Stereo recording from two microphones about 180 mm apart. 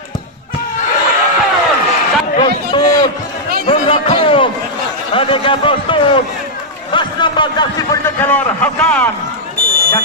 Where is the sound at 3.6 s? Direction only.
30° left (ahead or behind); by 9.1 s 10° left (ahead or behind).